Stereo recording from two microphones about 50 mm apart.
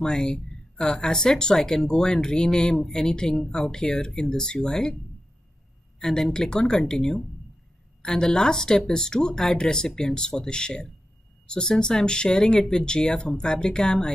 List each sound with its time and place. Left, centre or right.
0.0 s speech: centre
5.9 s speech: centre